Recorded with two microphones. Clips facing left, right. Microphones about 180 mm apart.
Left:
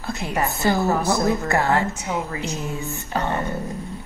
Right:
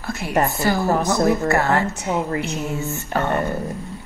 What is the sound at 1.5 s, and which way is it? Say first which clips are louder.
Speech: right 1 dB; 15° left (ahead or behind).